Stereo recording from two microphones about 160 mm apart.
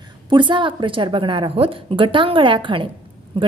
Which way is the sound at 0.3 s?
30° right (ahead or behind).